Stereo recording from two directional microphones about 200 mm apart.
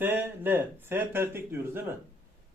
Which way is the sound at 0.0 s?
10° right (ahead or behind).